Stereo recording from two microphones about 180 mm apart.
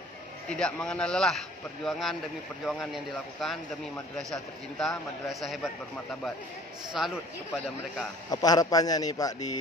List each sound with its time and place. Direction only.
0.5 s a man's voice: 5° left (ahead or behind)
7.0 s a man's voice: centre (ahead or behind)
8.3 s a man's voice: 20° left (ahead or behind)